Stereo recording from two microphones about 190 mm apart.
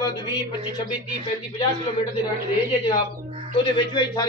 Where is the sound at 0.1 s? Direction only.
25° left (ahead or behind).